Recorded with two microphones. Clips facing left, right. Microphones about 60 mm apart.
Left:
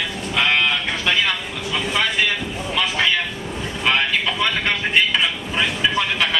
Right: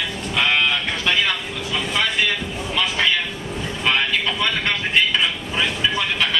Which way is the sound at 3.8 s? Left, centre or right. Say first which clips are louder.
Left 1 dB; centre.